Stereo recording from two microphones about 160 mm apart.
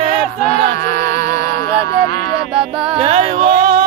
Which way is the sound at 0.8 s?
55° left (ahead or behind).